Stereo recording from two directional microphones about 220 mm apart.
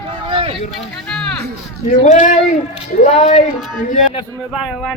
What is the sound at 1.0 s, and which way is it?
Speech, 5° left (ahead or behind).